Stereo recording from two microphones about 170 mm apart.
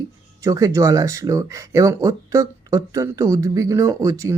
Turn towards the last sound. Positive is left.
turn(degrees=-20)  # may be behind; listen again after turning